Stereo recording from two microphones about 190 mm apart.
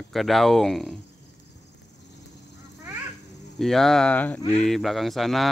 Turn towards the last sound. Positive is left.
turn(degrees=0)  # may be behind; listen again after turning